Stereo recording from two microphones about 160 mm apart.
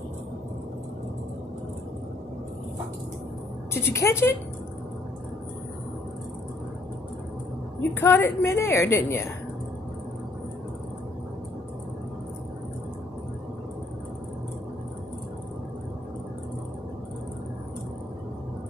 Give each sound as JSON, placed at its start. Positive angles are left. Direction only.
{"t": 3.7, "sound": "a woman's voice", "side_deg": 15}
{"t": 7.9, "sound": "a woman's voice", "side_deg": 15}